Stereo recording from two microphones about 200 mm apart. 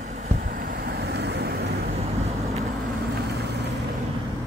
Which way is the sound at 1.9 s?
30° right (ahead or behind).